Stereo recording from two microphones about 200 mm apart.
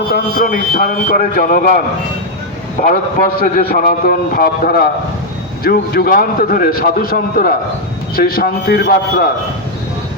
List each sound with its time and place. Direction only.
0.1 s a man's voice: 45° left (ahead or behind)
2.8 s a man's voice: 45° left (ahead or behind)